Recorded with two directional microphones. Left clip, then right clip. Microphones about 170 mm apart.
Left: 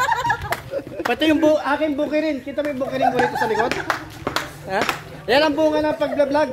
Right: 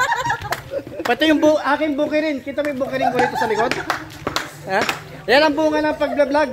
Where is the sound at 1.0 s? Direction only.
30° right (ahead or behind).